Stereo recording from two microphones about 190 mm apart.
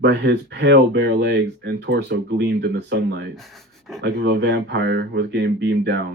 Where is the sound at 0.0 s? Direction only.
65° right (ahead or behind).